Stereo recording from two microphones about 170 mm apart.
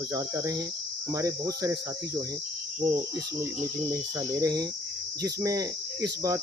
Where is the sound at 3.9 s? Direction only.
20° right (ahead or behind).